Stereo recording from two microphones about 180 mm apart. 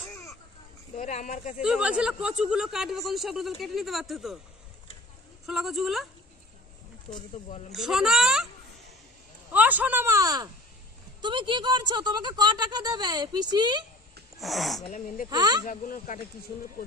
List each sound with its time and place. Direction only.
0.1 s children playing: 15° left (ahead or behind)
0.9 s speech: 45° left (ahead or behind)
1.6 s speech: 5° right (ahead or behind)
5.5 s speech: centre (ahead or behind)
7.7 s speech: centre (ahead or behind)
9.5 s speech: 10° right (ahead or behind)
14.4 s speech: centre (ahead or behind)
15.2 s speech: 20° right (ahead or behind)
15.6 s speech: 50° left (ahead or behind)